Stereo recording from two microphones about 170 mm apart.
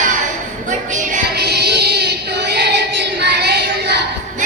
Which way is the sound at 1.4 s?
75° right (ahead or behind).